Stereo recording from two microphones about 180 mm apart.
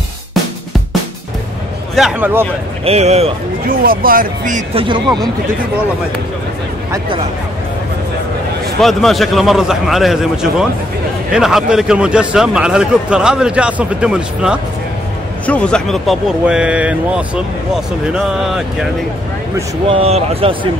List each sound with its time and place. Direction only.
2.0 s speech: 5° right (ahead or behind)
2.8 s speech: 35° right (ahead or behind)
3.6 s speech: 55° right (ahead or behind)
4.7 s speech: 25° right (ahead or behind)
8.8 s a man's voice: centre (ahead or behind)
15.4 s a man's voice: 5° left (ahead or behind)
19.9 s speech: 35° right (ahead or behind)